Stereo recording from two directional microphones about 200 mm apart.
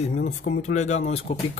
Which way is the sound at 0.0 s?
35° left (ahead or behind).